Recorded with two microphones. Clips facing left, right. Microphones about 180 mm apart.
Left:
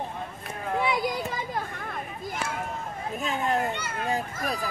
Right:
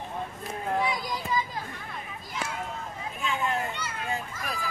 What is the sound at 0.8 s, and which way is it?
Children playing, 60° left (ahead or behind).